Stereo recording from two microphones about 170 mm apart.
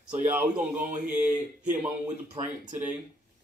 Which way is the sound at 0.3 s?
10° right (ahead or behind).